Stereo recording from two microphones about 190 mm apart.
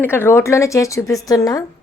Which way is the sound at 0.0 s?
10° left (ahead or behind).